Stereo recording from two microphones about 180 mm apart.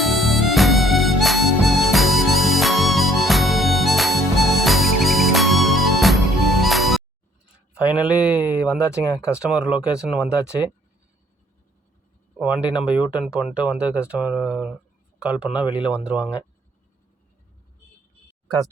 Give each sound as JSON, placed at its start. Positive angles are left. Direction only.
{"t": 0.0, "sound": "music", "side_deg": 0}
{"t": 7.7, "sound": "a sound", "side_deg": -5}
{"t": 8.8, "sound": "speech", "side_deg": 15}
{"t": 9.1, "sound": "speech", "side_deg": -5}
{"t": 12.4, "sound": "speech", "side_deg": -5}
{"t": 18.4, "sound": "speech", "side_deg": -20}